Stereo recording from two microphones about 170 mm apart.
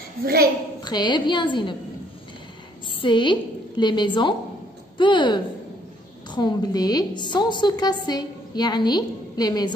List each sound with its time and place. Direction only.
0.2 s a woman's voice: 60° right (ahead or behind)
0.8 s a woman's voice: 25° left (ahead or behind)
3.0 s a woman's voice: 30° left (ahead or behind)